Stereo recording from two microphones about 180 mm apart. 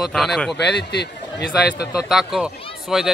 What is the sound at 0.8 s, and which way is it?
A man's voice, 70° left (ahead or behind).